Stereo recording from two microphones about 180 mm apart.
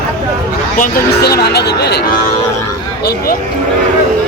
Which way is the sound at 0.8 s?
55° left (ahead or behind).